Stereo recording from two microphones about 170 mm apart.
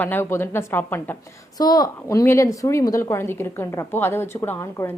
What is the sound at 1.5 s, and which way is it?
A woman's voice, 20° left (ahead or behind).